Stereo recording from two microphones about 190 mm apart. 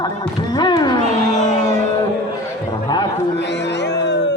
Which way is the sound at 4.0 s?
65° left (ahead or behind).